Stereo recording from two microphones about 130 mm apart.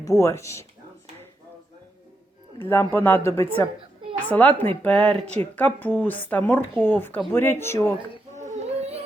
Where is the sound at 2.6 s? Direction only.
15° left (ahead or behind).